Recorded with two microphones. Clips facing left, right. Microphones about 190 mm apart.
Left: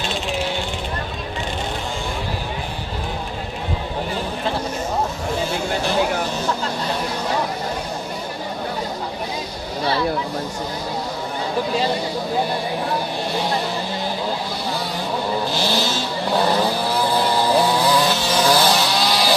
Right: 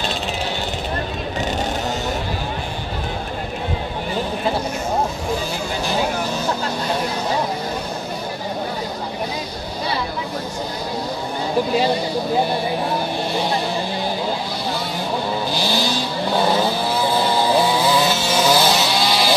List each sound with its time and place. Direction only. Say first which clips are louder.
15.5 s vehicle: even; 25° left (ahead or behind)
17.5 s vehicle: left 1 dB; centre (ahead or behind)